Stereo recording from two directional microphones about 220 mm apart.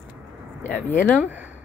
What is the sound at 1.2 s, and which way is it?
Speech, 5° right (ahead or behind).